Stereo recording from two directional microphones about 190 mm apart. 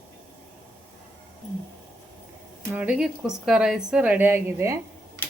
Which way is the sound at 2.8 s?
5° right (ahead or behind).